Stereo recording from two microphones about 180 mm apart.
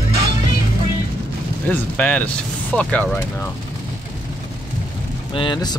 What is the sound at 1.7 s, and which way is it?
Speech, 10° left (ahead or behind).